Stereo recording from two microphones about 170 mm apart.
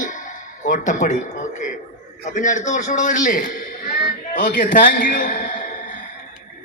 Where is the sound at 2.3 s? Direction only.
45° left (ahead or behind).